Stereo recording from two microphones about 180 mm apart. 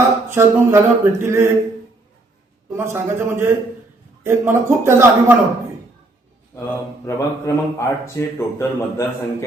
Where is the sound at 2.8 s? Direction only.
15° right (ahead or behind).